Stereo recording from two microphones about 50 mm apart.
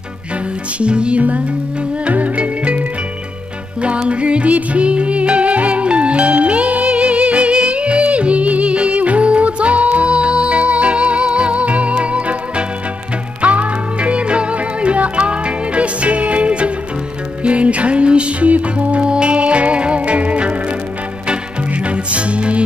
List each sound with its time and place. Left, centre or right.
0.7 s music: right
3.8 s music: right